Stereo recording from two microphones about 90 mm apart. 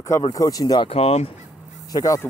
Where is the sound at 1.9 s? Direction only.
40° left (ahead or behind).